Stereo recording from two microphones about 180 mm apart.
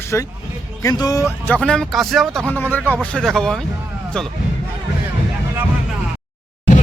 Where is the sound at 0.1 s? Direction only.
10° left (ahead or behind).